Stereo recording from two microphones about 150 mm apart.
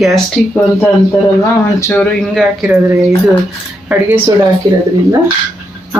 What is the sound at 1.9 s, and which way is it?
Speech, 5° left (ahead or behind).